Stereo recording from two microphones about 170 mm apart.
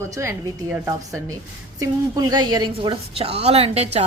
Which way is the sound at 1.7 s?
20° right (ahead or behind).